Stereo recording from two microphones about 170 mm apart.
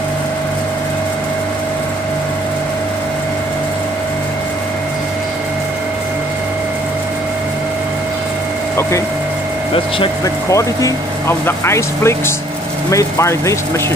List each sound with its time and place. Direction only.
10.2 s speech: 20° left (ahead or behind)